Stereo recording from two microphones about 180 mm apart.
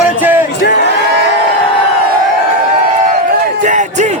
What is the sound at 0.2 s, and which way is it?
Crowd, 10° right (ahead or behind).